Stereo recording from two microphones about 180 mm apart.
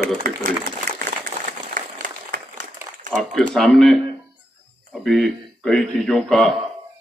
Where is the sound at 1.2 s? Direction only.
50° right (ahead or behind).